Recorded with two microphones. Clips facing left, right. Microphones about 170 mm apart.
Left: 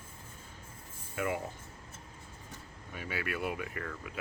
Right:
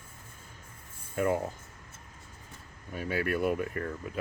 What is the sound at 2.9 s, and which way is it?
Speech, 45° right (ahead or behind).